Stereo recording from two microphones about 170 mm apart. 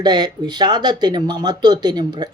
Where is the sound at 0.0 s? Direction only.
25° right (ahead or behind).